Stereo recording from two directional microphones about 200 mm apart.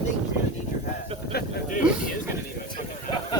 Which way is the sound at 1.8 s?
5° right (ahead or behind).